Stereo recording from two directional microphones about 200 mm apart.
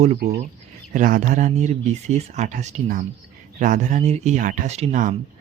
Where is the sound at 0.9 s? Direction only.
40° right (ahead or behind).